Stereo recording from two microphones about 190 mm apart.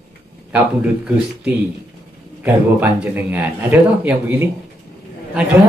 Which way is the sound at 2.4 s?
10° right (ahead or behind).